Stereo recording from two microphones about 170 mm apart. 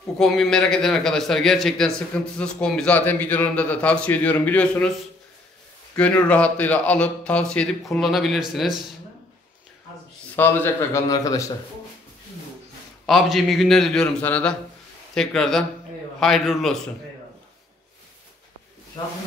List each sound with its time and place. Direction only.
0.2 s a man's voice: 5° left (ahead or behind)
5.9 s a man's voice: 5° left (ahead or behind)
10.3 s a man's voice: 10° left (ahead or behind)
13.0 s a man's voice: centre (ahead or behind)